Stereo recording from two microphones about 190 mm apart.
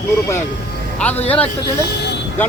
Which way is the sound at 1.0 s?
10° left (ahead or behind).